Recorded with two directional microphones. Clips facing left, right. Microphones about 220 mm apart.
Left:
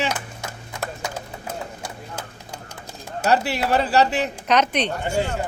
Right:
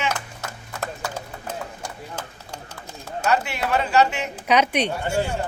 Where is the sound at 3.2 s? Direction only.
35° left (ahead or behind).